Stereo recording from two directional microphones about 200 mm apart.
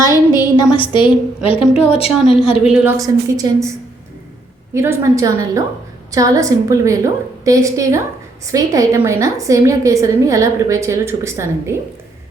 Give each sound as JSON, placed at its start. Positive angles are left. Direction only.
{"t": 0.3, "sound": "a woman's voice", "side_deg": 20}
{"t": 2.0, "sound": "a woman's voice", "side_deg": 0}
{"t": 3.0, "sound": "a woman's voice", "side_deg": -15}
{"t": 4.7, "sound": "a woman's voice", "side_deg": -15}